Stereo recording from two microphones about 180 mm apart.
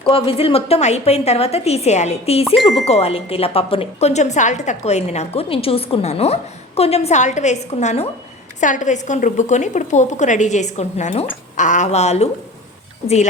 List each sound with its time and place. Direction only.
0.0 s speech: 30° left (ahead or behind)
2.6 s speech: centre (ahead or behind)
2.8 s speech: 35° left (ahead or behind)